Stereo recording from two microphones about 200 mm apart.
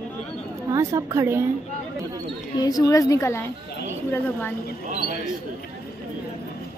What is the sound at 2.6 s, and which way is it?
Speech, 20° left (ahead or behind).